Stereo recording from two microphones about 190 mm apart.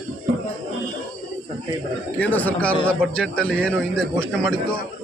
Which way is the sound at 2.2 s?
10° left (ahead or behind).